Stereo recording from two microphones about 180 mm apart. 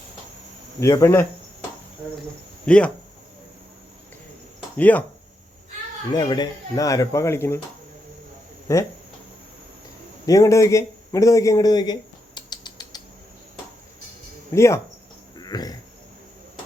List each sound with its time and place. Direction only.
0.8 s speech: 15° left (ahead or behind)
2.6 s speech: 5° left (ahead or behind)
4.8 s speech: 10° left (ahead or behind)
6.1 s speech: 25° left (ahead or behind)
8.7 s speech: 15° left (ahead or behind)
10.2 s a sound: 20° left (ahead or behind)
14.5 s speech: 15° left (ahead or behind)
15.4 s a sound: 20° left (ahead or behind)